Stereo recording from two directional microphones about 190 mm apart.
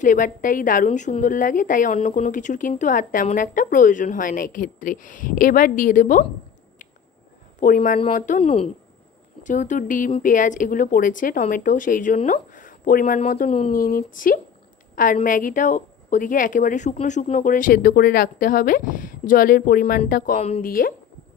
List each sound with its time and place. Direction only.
0.0 s a woman's voice: 45° left (ahead or behind)
7.6 s a woman's voice: 45° left (ahead or behind)